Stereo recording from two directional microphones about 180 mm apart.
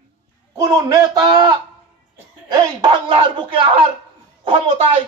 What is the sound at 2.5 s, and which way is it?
Speech, 25° right (ahead or behind).